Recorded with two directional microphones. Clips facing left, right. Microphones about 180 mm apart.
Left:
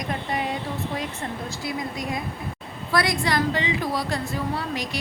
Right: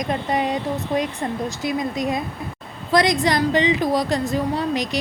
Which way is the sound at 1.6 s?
20° right (ahead or behind).